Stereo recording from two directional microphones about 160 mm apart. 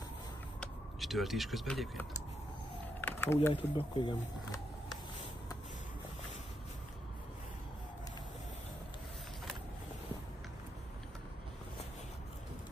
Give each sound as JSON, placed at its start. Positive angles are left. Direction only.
{"t": 0.6, "sound": "speech", "side_deg": 0}
{"t": 3.0, "sound": "typing", "side_deg": 15}
{"t": 3.5, "sound": "speech", "side_deg": 30}